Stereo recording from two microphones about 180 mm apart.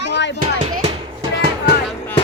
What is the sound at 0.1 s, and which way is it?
Music, 75° left (ahead or behind).